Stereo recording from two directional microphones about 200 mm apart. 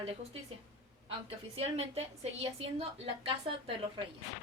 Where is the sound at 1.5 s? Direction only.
30° right (ahead or behind).